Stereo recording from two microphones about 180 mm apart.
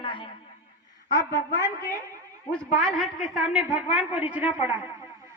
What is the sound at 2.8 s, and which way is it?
A woman's voice, centre (ahead or behind).